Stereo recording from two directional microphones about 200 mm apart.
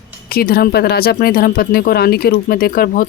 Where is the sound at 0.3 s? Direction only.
50° left (ahead or behind).